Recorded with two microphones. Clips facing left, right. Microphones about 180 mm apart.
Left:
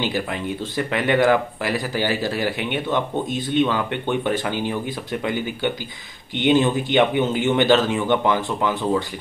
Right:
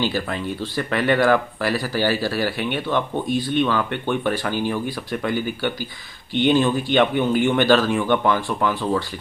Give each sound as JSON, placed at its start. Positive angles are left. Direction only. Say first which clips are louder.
{"t": 0.0, "sound": "speech", "louder": "right 1 dB", "side_deg": 20}